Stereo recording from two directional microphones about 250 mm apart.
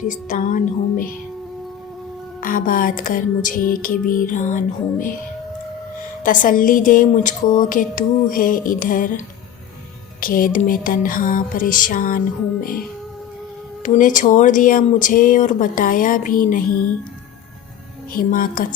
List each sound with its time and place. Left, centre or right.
0.0 s a woman's voice: left
2.4 s a woman's voice: left
6.2 s a woman's voice: left
13.8 s a woman's voice: left
18.1 s a woman's voice: left